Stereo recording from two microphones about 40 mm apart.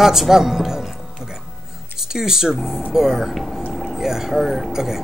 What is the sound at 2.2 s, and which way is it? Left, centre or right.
Speech, centre.